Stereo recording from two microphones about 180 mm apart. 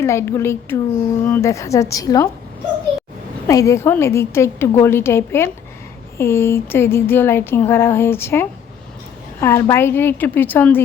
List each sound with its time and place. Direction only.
0.0 s speech: 15° left (ahead or behind)
3.4 s speech: 15° left (ahead or behind)